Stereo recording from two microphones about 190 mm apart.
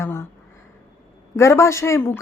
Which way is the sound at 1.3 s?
15° left (ahead or behind).